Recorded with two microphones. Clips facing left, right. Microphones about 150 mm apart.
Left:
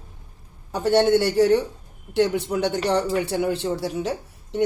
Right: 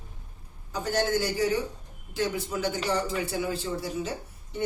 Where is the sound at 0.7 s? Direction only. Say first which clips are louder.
Left 9 dB; 70° left (ahead or behind).